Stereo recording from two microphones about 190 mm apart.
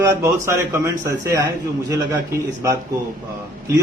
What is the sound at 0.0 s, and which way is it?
A man's voice, 15° right (ahead or behind).